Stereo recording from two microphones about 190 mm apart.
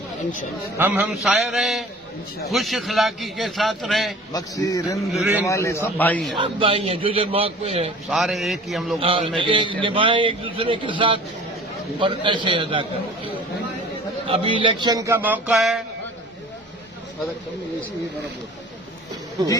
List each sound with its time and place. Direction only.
0.8 s a man's voice: 5° right (ahead or behind)
4.3 s a man's voice: 20° left (ahead or behind)
6.4 s a man's voice: 30° right (ahead or behind)
8.1 s a man's voice: centre (ahead or behind)
9.0 s a man's voice: 30° right (ahead or behind)
14.3 s speech: 30° right (ahead or behind); by 15.8 s centre (ahead or behind)
19.4 s a man's voice: 20° right (ahead or behind)